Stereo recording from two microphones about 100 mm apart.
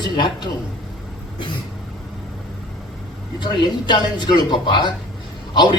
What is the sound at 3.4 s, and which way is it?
A man's voice, 50° left (ahead or behind).